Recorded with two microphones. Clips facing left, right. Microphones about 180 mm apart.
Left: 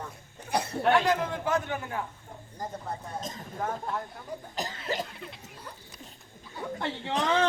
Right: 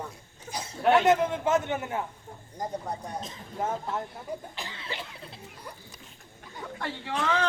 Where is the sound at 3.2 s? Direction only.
45° left (ahead or behind).